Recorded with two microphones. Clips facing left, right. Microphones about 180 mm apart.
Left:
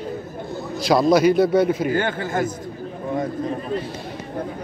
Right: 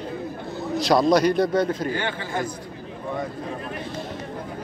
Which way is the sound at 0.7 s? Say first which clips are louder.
Left 2 dB; centre (ahead or behind).